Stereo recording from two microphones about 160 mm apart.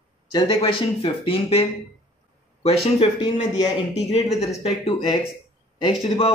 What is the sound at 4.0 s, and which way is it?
Speech, 40° left (ahead or behind).